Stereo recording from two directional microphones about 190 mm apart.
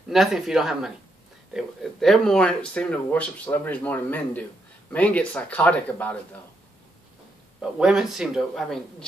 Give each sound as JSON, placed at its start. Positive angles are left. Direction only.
{"t": 0.1, "sound": "speech", "side_deg": 0}
{"t": 7.8, "sound": "speech", "side_deg": 0}